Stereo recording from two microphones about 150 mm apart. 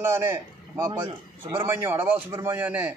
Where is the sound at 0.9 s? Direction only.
30° right (ahead or behind).